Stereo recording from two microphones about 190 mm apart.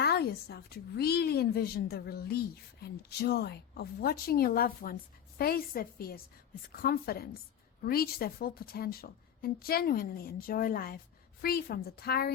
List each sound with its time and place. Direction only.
0.0 s a woman's voice: 60° left (ahead or behind)